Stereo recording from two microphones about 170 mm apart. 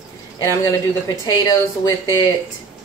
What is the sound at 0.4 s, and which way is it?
A woman's voice, 20° left (ahead or behind).